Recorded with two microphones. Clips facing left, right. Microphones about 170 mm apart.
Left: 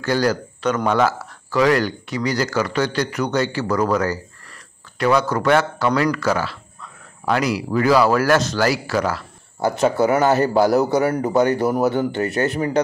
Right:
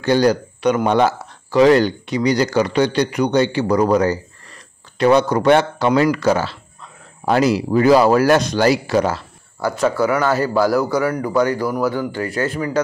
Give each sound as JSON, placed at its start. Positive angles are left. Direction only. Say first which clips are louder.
{"t": 0.0, "sound": "speech", "louder": "right 4 dB", "side_deg": -20}
{"t": 9.6, "sound": "speech", "louder": "even", "side_deg": 20}